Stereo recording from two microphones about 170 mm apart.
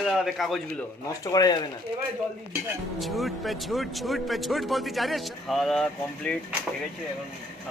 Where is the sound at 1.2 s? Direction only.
20° left (ahead or behind).